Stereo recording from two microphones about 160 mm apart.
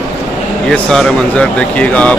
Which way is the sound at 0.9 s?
5° left (ahead or behind).